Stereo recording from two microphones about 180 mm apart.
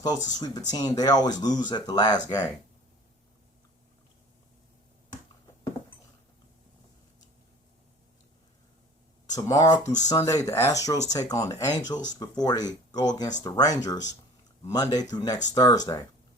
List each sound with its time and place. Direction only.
0.3 s speech: 20° left (ahead or behind)
9.3 s speech: 20° left (ahead or behind)